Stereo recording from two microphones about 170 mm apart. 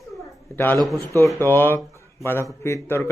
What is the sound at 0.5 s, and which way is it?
Speech, 10° left (ahead or behind).